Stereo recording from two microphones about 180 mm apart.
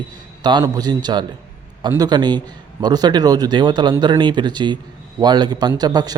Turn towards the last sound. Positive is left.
turn(degrees=-20)  # may be behind; listen again after turning